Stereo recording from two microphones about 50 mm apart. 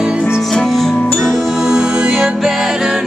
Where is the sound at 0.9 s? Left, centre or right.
Left.